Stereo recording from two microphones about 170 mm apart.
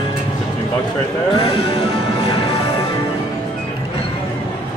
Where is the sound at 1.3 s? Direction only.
35° left (ahead or behind).